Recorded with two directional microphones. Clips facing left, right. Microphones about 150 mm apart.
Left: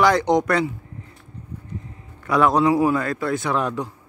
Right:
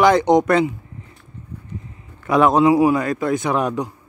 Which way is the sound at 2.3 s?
20° right (ahead or behind).